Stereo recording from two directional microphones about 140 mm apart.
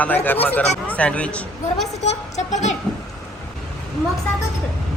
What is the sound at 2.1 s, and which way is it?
Speech, 55° left (ahead or behind).